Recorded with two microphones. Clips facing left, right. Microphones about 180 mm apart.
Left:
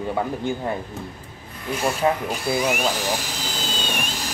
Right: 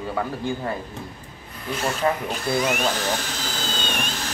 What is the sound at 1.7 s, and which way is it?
Speech, 10° left (ahead or behind).